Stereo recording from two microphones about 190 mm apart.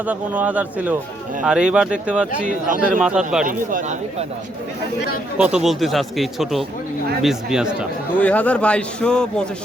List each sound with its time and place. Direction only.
0.0 s speech: 10° right (ahead or behind)
2.6 s speech: 45° right (ahead or behind)
3.0 s speech: 5° right (ahead or behind)
3.4 s speech: 45° right (ahead or behind)
5.4 s speech: 5° right (ahead or behind)
8.2 s speech: 5° left (ahead or behind)